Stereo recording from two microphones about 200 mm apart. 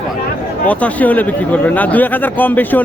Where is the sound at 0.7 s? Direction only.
5° left (ahead or behind).